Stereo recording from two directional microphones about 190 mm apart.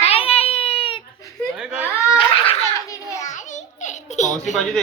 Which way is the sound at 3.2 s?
40° left (ahead or behind).